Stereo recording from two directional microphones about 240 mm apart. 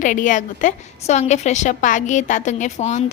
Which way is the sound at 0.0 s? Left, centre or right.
Left.